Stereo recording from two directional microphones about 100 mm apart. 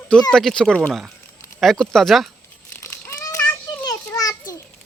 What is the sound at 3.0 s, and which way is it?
Child singing, 30° left (ahead or behind).